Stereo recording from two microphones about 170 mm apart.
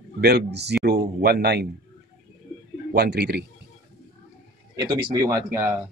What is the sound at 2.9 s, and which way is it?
Speech, 75° right (ahead or behind).